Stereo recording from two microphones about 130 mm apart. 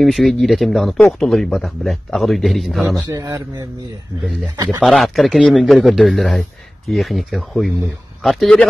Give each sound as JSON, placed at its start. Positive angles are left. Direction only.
{"t": 0.0, "sound": "a man's voice", "side_deg": 0}
{"t": 3.1, "sound": "a man's voice", "side_deg": -25}
{"t": 4.8, "sound": "a man's voice", "side_deg": 0}